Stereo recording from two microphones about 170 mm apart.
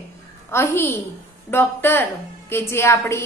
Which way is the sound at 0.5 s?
15° left (ahead or behind).